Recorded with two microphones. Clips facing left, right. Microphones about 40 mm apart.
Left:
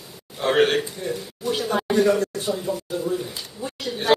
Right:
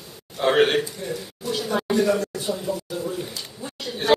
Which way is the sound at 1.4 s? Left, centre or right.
Left.